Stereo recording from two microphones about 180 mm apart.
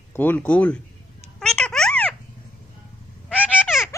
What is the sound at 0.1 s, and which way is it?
Speech, 10° left (ahead or behind).